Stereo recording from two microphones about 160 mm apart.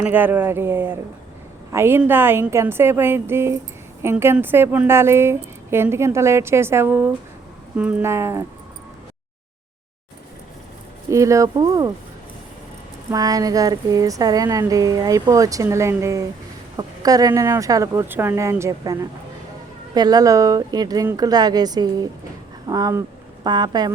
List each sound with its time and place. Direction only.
0.0 s a woman's voice: 10° right (ahead or behind)
11.1 s speech: 20° right (ahead or behind)
13.1 s speech: 25° right (ahead or behind)